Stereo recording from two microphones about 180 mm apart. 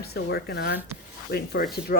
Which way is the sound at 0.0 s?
65° left (ahead or behind).